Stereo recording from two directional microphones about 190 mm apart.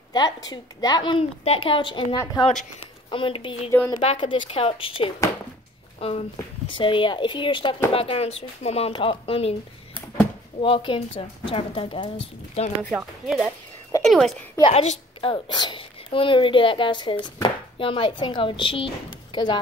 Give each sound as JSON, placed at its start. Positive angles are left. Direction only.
{"t": 0.1, "sound": "a woman's voice", "side_deg": 20}
{"t": 10.6, "sound": "a woman's voice", "side_deg": 25}
{"t": 12.9, "sound": "a woman's voice", "side_deg": 0}
{"t": 14.6, "sound": "a woman's voice", "side_deg": 30}